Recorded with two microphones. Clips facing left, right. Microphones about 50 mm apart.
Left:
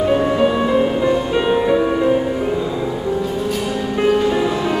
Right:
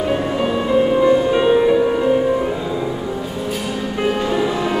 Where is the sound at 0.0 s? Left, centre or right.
Centre.